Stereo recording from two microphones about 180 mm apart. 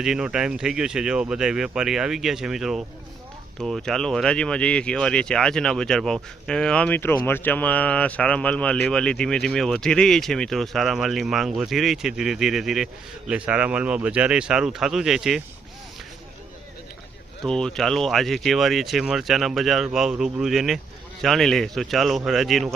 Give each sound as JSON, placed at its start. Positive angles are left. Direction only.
{"t": 0.0, "sound": "speech", "side_deg": -5}
{"t": 17.4, "sound": "speech", "side_deg": 5}